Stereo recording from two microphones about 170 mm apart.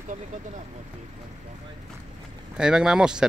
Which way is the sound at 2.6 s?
5° right (ahead or behind).